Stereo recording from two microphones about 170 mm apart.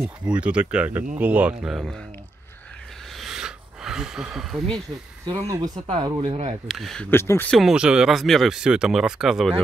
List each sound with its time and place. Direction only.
0.0 s speech: 5° right (ahead or behind)
3.2 s a sound: 5° right (ahead or behind)
5.2 s speech: 30° right (ahead or behind)
6.7 s speech: centre (ahead or behind)
7.1 s speech: 15° left (ahead or behind)
7.5 s speech: 5° right (ahead or behind)